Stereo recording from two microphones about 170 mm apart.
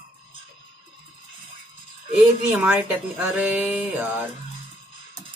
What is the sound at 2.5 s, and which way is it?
Mantra, 10° right (ahead or behind).